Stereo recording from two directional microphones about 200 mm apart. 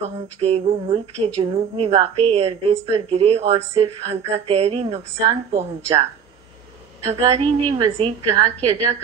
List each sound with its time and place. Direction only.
0.4 s a woman's voice: 30° right (ahead or behind)
7.1 s a woman's voice: 30° right (ahead or behind)